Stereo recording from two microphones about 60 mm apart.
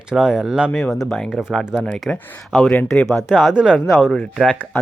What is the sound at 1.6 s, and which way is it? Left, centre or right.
Speech, centre.